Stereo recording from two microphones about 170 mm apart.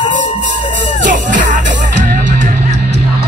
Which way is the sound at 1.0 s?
50° right (ahead or behind).